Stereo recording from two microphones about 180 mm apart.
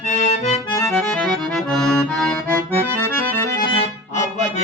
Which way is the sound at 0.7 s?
15° left (ahead or behind).